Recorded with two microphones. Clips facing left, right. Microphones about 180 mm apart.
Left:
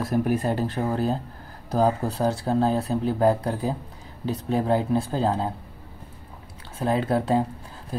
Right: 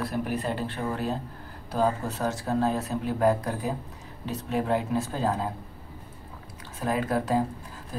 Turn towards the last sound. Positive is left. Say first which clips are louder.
# left 3 dB
turn(degrees=30)  # may be behind; listen again after turning